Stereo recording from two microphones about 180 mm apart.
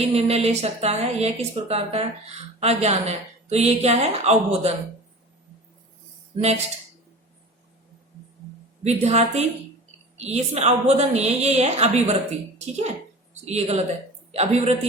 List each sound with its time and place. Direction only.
0.0 s speech: 35° right (ahead or behind)
8.8 s speech: 35° right (ahead or behind)